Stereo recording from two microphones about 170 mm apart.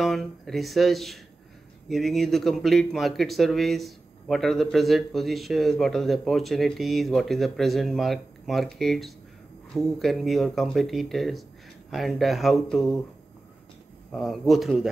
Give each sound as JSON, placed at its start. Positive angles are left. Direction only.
{"t": 0.0, "sound": "a man's voice", "side_deg": 0}
{"t": 14.1, "sound": "a man's voice", "side_deg": 0}